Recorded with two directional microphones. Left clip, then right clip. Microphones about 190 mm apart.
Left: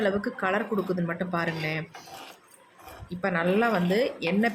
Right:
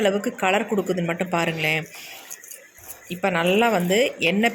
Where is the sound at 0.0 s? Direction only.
15° right (ahead or behind).